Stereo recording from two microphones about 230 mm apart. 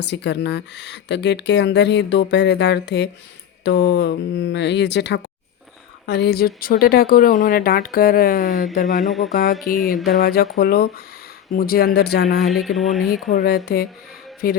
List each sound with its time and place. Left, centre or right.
0.0 s speech: left
9.7 s speech: centre
10.2 s speech: left
12.5 s speech: centre
13.3 s speech: left